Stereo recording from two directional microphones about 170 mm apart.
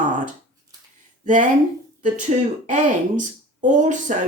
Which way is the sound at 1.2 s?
50° right (ahead or behind).